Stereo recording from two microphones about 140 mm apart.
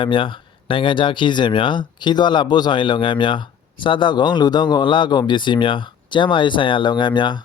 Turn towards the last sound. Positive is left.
turn(degrees=35)  # may be behind; listen again after turning